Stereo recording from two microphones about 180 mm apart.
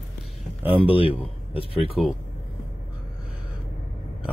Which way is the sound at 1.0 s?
30° left (ahead or behind).